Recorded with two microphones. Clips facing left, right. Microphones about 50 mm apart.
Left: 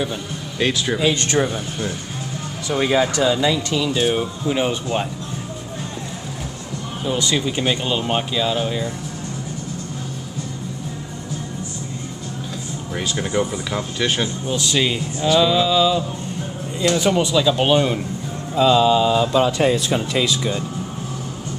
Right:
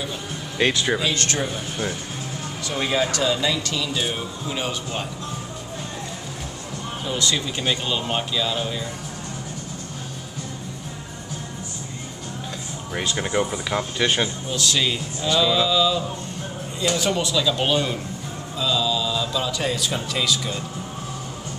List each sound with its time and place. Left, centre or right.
0.6 s speech: centre
1.1 s speech: centre
2.7 s speech: centre
7.3 s speech: centre
12.9 s speech: centre
14.5 s speech: centre
17.0 s speech: left
18.6 s speech: left